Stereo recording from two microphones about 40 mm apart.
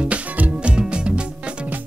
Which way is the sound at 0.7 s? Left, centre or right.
Right.